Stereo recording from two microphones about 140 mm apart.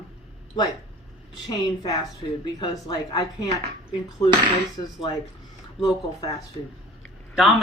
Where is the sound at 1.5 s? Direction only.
30° left (ahead or behind).